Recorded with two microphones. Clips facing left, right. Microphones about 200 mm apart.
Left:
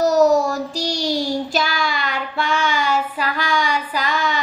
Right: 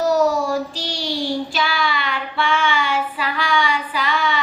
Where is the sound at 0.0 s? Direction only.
40° left (ahead or behind).